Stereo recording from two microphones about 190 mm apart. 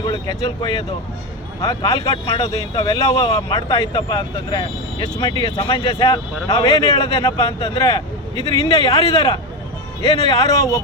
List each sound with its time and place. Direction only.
0.0 s a man's voice: 25° left (ahead or behind)